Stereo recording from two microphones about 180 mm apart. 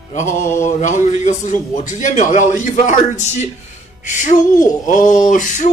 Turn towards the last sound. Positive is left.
turn(degrees=45)  # may be behind; listen again after turning